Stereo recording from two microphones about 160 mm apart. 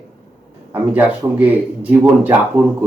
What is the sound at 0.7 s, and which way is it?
Speech, 10° right (ahead or behind).